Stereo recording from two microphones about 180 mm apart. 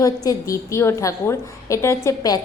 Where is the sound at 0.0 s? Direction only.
20° left (ahead or behind).